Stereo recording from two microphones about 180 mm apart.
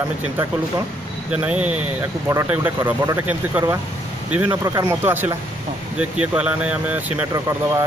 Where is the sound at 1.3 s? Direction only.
5° right (ahead or behind).